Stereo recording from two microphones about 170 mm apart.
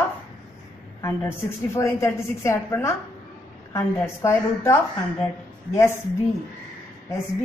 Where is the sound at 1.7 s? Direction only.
15° left (ahead or behind).